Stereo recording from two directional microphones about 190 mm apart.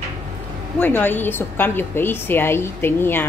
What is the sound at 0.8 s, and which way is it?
A woman's voice, 10° left (ahead or behind).